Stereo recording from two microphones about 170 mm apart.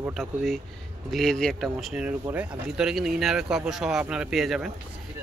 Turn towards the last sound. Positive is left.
turn(degrees=0)  # may be behind; listen again after turning